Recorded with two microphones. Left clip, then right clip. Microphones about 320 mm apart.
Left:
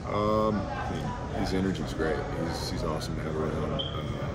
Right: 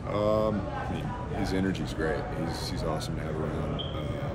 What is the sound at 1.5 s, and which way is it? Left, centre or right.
Speech, centre.